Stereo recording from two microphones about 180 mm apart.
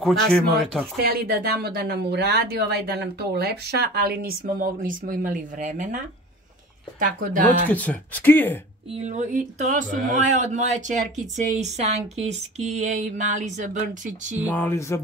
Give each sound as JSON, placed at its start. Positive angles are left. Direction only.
{"t": 0.0, "sound": "speech", "side_deg": 5}
{"t": 1.0, "sound": "speech", "side_deg": -60}
{"t": 7.0, "sound": "speech", "side_deg": -50}
{"t": 7.7, "sound": "speech", "side_deg": 10}
{"t": 8.9, "sound": "speech", "side_deg": -40}
{"t": 11.5, "sound": "a sound", "side_deg": -40}
{"t": 14.5, "sound": "speech", "side_deg": 10}